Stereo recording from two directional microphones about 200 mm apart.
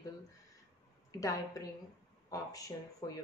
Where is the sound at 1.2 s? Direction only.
15° left (ahead or behind).